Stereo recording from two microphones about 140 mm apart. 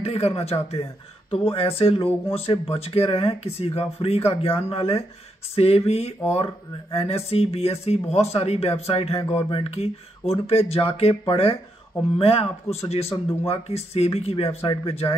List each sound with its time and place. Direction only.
0.0 s speech: 50° left (ahead or behind)